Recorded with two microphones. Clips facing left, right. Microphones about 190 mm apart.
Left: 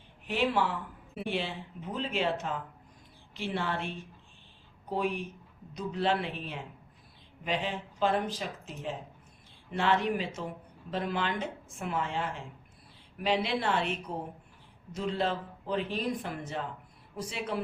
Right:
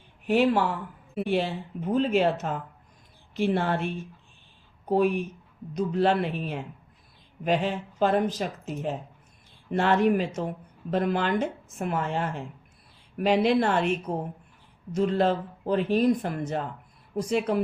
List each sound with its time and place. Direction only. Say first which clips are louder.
0.3 s speech: right 7 dB; 45° right (ahead or behind)